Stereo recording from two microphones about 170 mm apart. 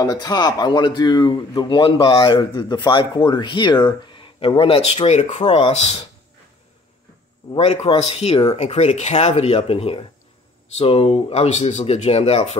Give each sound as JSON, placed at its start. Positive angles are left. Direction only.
{"t": 0.0, "sound": "speech", "side_deg": 20}
{"t": 7.5, "sound": "speech", "side_deg": 35}